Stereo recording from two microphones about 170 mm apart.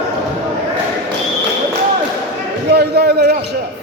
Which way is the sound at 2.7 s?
70° right (ahead or behind).